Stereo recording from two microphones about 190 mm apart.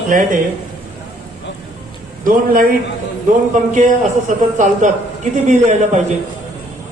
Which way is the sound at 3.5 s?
40° right (ahead or behind).